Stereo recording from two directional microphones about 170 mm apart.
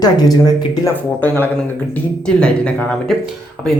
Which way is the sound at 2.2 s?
5° left (ahead or behind).